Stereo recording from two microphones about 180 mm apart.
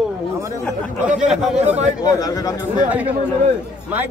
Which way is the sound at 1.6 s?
40° right (ahead or behind).